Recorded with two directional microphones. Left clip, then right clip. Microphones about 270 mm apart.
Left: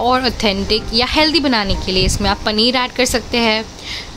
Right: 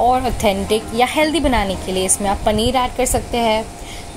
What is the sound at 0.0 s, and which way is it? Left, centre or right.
Speech, centre.